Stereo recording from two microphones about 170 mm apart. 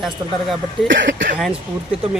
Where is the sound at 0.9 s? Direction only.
90° right.